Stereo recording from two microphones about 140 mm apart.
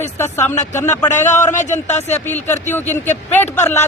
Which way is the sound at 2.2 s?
15° left (ahead or behind).